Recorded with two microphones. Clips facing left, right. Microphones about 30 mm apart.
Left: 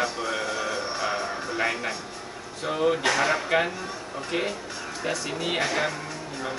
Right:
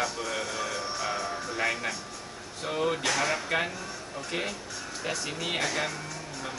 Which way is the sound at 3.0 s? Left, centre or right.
Centre.